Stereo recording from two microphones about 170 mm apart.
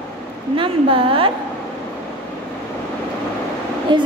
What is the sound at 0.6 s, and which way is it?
Speech, 30° right (ahead or behind).